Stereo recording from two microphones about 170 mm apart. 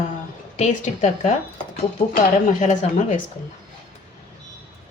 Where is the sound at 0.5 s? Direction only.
45° left (ahead or behind).